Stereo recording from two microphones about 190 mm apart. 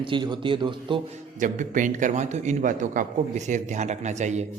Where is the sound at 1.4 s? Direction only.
45° right (ahead or behind).